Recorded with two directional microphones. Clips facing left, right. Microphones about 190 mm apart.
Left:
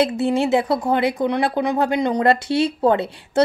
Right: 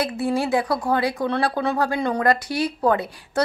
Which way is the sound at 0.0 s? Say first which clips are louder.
Left 4 dB; 25° left (ahead or behind).